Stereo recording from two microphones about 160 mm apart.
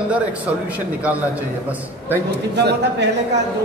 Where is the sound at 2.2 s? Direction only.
90° right.